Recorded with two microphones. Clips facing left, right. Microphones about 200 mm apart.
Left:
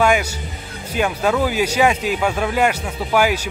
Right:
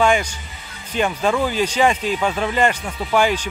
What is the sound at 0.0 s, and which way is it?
A man's voice, 5° left (ahead or behind).